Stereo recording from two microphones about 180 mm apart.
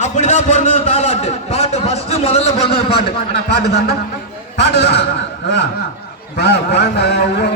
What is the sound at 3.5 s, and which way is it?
Speech, 65° left (ahead or behind).